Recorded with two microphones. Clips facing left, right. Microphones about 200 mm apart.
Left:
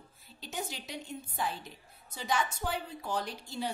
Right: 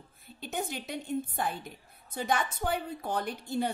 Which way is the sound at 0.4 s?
55° right (ahead or behind).